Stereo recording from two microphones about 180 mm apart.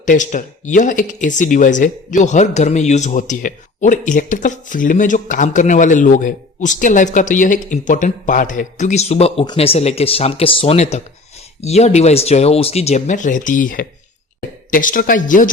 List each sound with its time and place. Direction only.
0.0 s speech: 45° left (ahead or behind)